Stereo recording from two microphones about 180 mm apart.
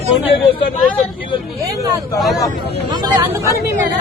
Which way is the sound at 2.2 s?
Centre (ahead or behind).